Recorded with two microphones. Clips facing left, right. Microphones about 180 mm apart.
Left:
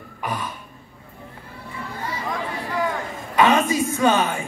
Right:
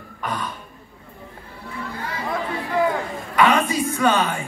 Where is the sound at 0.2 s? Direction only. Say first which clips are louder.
Even; 15° left (ahead or behind).